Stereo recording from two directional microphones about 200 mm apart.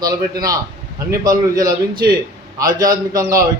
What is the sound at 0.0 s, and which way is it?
A man's voice, 20° right (ahead or behind).